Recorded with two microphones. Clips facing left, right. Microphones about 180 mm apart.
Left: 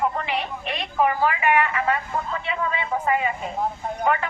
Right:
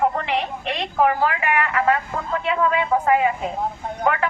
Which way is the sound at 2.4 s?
90° right.